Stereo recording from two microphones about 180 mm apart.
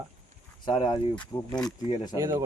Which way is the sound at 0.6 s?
25° left (ahead or behind).